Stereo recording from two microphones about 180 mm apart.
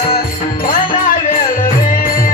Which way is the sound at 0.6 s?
50° left (ahead or behind).